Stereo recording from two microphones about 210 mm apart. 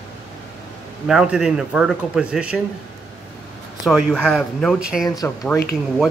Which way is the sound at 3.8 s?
Centre (ahead or behind).